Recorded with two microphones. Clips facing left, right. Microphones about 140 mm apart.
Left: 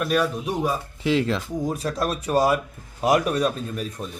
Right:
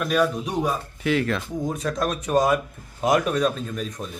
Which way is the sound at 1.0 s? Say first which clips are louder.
Left 1 dB; 25° left (ahead or behind).